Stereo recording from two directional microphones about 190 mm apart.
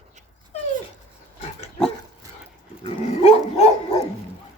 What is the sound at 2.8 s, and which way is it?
Dog, 35° left (ahead or behind).